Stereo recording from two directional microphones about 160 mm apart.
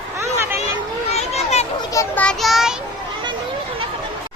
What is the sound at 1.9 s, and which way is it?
Speech, 15° left (ahead or behind).